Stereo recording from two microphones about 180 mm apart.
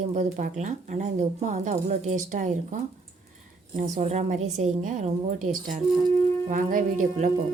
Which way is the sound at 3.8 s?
40° right (ahead or behind).